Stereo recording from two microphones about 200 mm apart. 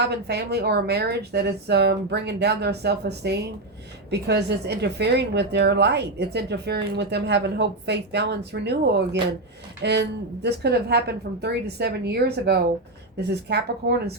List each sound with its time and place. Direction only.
0.0 s a woman's voice: 55° right (ahead or behind)